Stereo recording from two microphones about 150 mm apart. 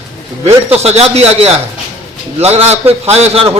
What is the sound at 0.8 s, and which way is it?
A man's voice, 45° right (ahead or behind).